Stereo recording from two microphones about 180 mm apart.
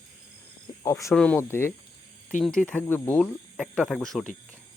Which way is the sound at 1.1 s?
5° left (ahead or behind).